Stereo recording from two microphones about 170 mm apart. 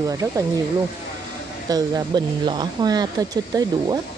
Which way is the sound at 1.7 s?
20° right (ahead or behind).